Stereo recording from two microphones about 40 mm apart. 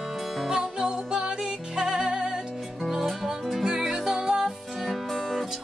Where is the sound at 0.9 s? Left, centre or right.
Right.